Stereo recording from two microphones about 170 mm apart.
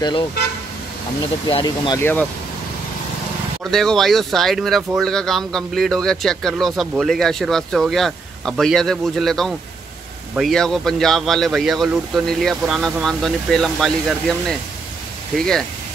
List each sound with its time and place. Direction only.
0.0 s speech: 25° left (ahead or behind)
1.5 s speech: 25° left (ahead or behind)
2.0 s speech: 10° left (ahead or behind)
3.7 s speech: centre (ahead or behind)
15.3 s speech: 5° left (ahead or behind)